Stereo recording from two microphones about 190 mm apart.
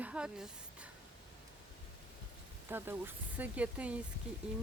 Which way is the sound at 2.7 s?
10° right (ahead or behind).